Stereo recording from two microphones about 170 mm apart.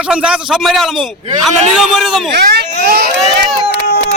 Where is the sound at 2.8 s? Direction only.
65° right (ahead or behind).